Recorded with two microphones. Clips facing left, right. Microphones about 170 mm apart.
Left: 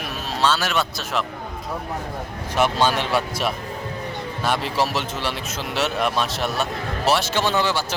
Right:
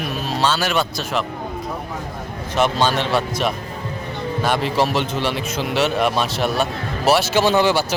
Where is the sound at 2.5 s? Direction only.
10° left (ahead or behind).